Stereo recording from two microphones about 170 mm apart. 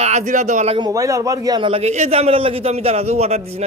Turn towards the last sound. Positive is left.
turn(degrees=-40)  # may be behind; listen again after turning